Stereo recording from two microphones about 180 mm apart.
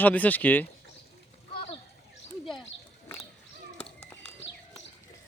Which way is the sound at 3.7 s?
35° left (ahead or behind).